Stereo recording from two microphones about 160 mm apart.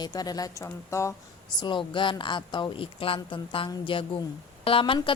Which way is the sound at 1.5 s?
30° left (ahead or behind).